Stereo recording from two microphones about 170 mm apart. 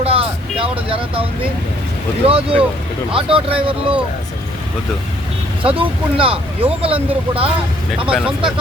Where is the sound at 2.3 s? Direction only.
35° right (ahead or behind).